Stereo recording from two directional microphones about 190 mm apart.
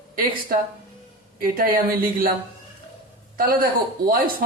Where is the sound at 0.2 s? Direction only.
45° right (ahead or behind).